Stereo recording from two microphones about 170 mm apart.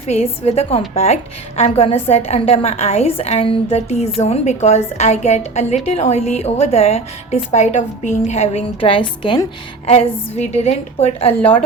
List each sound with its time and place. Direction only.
0.0 s a woman's voice: 40° left (ahead or behind)
9.9 s a woman's voice: 40° left (ahead or behind)